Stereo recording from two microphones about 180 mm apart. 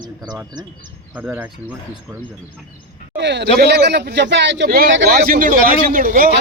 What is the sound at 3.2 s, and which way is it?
A man's voice, 75° right (ahead or behind).